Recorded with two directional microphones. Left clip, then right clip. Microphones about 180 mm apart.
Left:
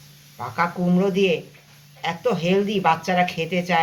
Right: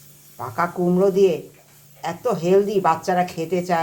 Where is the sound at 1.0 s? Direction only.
35° right (ahead or behind).